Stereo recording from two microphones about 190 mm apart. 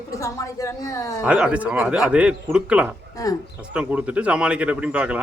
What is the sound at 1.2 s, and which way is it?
Speech, 5° right (ahead or behind).